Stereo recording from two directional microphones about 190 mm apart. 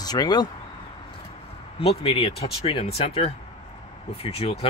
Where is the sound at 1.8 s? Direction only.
30° left (ahead or behind).